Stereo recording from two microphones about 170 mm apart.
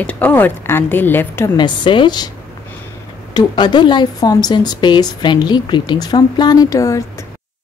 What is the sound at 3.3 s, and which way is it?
A woman's voice, 25° left (ahead or behind).